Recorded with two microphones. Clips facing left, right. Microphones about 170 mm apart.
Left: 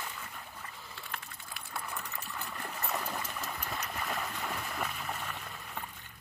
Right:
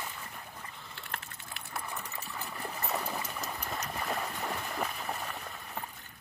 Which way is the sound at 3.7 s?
35° right (ahead or behind).